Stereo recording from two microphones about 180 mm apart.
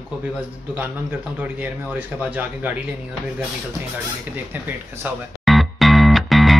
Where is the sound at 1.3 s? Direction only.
10° right (ahead or behind).